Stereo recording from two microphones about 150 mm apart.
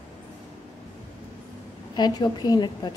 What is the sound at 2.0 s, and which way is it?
Speech, 30° left (ahead or behind).